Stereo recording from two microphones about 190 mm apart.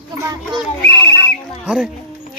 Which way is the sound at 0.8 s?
60° left (ahead or behind).